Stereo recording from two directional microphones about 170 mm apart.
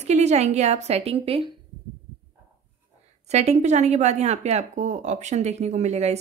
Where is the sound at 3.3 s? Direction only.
40° right (ahead or behind).